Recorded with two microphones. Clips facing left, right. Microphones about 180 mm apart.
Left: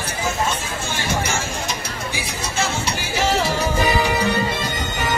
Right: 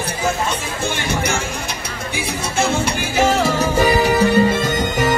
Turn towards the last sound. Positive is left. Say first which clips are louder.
# right 7 dB
turn(degrees=-45)  # may be behind; listen again after turning